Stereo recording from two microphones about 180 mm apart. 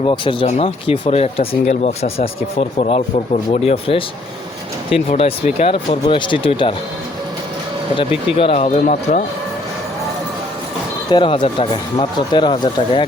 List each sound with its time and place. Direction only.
0.0 s speech: 30° left (ahead or behind)
7.9 s speech: 30° left (ahead or behind)
11.1 s speech: 25° left (ahead or behind)